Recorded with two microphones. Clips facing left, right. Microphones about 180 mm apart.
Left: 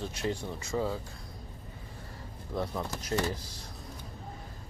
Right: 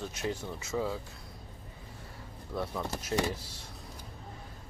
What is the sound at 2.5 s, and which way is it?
Speech, 20° left (ahead or behind).